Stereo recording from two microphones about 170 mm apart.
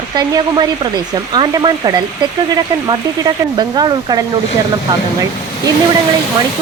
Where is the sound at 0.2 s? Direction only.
25° right (ahead or behind).